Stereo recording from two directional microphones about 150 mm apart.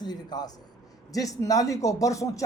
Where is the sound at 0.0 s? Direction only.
25° left (ahead or behind).